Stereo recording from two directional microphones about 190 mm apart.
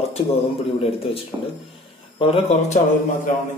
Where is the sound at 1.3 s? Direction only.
20° right (ahead or behind).